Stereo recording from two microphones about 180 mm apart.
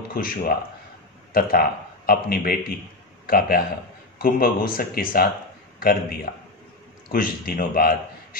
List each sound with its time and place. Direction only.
0.1 s a man's voice: 55° left (ahead or behind)